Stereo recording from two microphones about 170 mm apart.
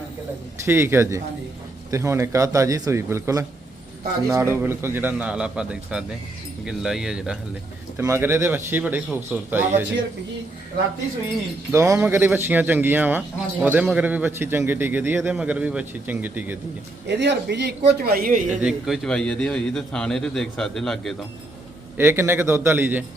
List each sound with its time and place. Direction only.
0.6 s a man's voice: 15° right (ahead or behind)
7.9 s a man's voice: 15° right (ahead or behind)
11.7 s a man's voice: 15° right (ahead or behind)
17.1 s a man's voice: 85° right; by 18.4 s 55° right (ahead or behind)
18.6 s a man's voice: centre (ahead or behind)
21.9 s a man's voice: 15° right (ahead or behind)